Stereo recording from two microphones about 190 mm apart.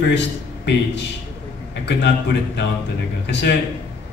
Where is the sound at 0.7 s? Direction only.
65° left (ahead or behind).